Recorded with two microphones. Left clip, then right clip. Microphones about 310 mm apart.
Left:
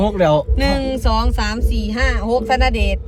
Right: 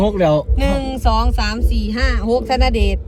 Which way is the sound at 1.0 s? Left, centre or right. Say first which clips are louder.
Right 1 dB; centre.